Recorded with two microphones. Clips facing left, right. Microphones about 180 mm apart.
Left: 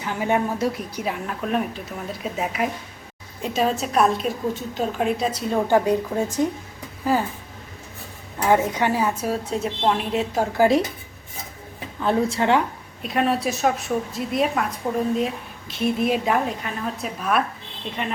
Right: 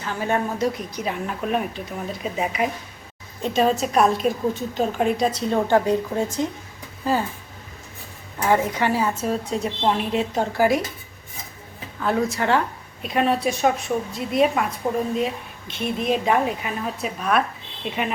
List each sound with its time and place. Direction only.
0.0 s a woman's voice: 15° left (ahead or behind)
0.6 s a woman's voice: 5° left (ahead or behind)
8.4 s a woman's voice: 10° left (ahead or behind)
9.5 s a woman's voice: centre (ahead or behind)
10.6 s a woman's voice: 25° left (ahead or behind)
12.0 s a woman's voice: 25° left (ahead or behind)
13.0 s a woman's voice: centre (ahead or behind)